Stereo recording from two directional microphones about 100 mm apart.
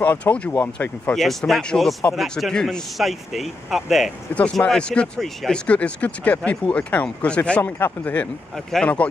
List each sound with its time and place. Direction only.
0.0 s speech: 15° left (ahead or behind)
1.1 s speech: centre (ahead or behind)